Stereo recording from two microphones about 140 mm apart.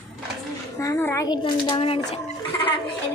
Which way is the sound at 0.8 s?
20° left (ahead or behind).